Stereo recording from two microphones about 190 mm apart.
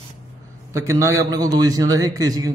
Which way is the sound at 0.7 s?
15° right (ahead or behind).